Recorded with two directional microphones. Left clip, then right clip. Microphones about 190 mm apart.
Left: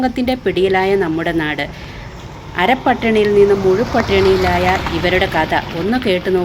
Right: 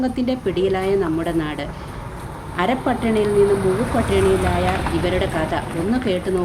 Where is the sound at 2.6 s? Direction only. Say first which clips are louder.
Left 6 dB; 20° left (ahead or behind).